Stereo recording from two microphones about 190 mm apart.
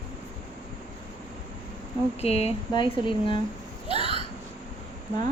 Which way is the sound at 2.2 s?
30° left (ahead or behind).